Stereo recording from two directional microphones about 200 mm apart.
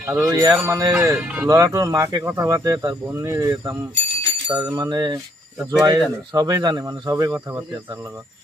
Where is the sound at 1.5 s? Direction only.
20° right (ahead or behind).